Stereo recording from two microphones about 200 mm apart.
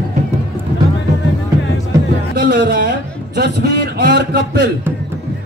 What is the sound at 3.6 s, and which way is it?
Speech, 55° right (ahead or behind).